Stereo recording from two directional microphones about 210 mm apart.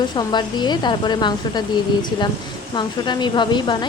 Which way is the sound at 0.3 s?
20° left (ahead or behind).